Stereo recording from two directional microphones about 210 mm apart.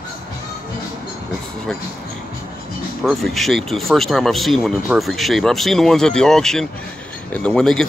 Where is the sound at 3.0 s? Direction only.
Centre (ahead or behind).